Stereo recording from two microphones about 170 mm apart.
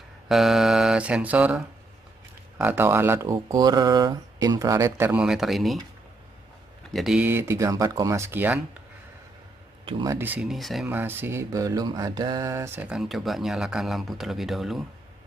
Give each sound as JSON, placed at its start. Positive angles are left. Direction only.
{"t": 0.3, "sound": "mantra", "side_deg": 0}
{"t": 2.6, "sound": "speech", "side_deg": -10}
{"t": 6.9, "sound": "speech", "side_deg": 0}
{"t": 9.8, "sound": "speech", "side_deg": -30}
{"t": 10.1, "sound": "mantra", "side_deg": -10}
{"t": 10.9, "sound": "speech", "side_deg": -10}